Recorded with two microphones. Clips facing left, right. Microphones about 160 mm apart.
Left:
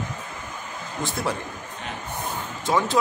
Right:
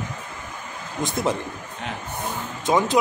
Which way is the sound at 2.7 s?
20° right (ahead or behind).